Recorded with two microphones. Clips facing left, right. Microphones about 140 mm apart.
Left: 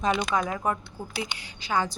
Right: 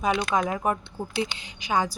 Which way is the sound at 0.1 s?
Centre (ahead or behind).